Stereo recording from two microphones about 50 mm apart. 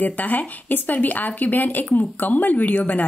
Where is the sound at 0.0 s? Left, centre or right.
Left.